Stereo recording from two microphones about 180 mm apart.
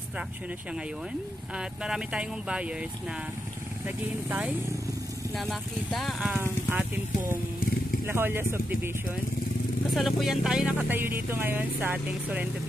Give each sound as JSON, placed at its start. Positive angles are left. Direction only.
{"t": 1.6, "sound": "music", "side_deg": -5}
{"t": 3.8, "sound": "speech", "side_deg": -10}
{"t": 5.5, "sound": "music", "side_deg": 0}
{"t": 6.4, "sound": "speech", "side_deg": -10}
{"t": 9.9, "sound": "music", "side_deg": 0}
{"t": 11.2, "sound": "speech", "side_deg": -10}